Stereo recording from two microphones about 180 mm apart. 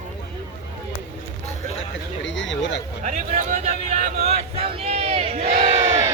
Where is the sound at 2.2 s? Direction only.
90° left.